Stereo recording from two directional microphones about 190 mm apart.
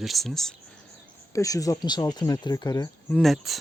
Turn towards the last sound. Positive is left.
turn(degrees=0)  # may be behind; listen again after turning